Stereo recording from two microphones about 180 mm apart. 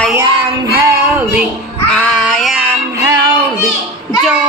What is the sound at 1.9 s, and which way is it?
Child singing, 5° left (ahead or behind).